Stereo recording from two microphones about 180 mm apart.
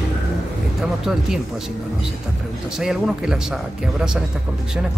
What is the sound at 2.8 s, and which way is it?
Speech, 5° right (ahead or behind).